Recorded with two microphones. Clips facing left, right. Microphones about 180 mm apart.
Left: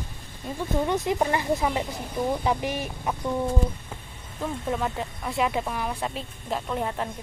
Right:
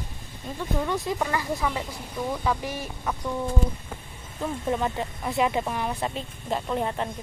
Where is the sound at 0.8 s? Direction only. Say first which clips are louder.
Left 4 dB; 20° left (ahead or behind).